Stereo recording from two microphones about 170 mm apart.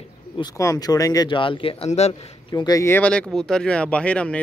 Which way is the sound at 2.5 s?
20° left (ahead or behind).